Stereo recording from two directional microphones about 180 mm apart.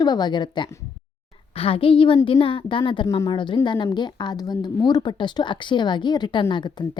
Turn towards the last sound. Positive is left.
turn(degrees=25)  # may be behind; listen again after turning